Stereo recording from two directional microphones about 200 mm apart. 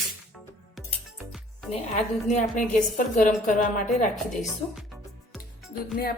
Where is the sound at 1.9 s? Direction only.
35° left (ahead or behind).